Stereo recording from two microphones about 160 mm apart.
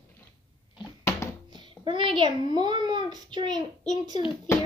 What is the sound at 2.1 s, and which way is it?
A child's voice, 30° right (ahead or behind).